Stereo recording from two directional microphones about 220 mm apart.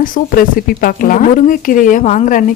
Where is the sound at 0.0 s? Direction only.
40° left (ahead or behind).